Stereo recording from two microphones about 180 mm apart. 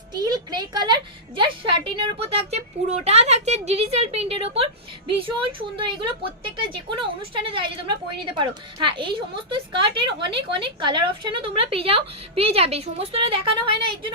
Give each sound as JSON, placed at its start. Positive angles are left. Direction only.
{"t": 0.1, "sound": "a child's voice", "side_deg": -20}